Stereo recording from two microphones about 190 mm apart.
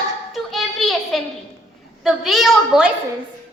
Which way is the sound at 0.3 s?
Centre (ahead or behind).